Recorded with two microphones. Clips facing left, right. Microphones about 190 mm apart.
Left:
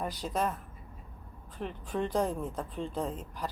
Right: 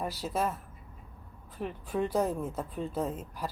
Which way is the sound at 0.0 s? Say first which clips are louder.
Even; 5° right (ahead or behind).